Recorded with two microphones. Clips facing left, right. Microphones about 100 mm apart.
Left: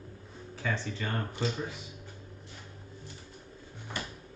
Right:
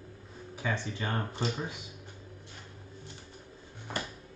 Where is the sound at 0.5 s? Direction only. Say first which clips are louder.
Even; 15° right (ahead or behind).